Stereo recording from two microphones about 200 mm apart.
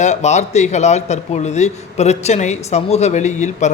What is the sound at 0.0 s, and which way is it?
A man's voice, 35° left (ahead or behind).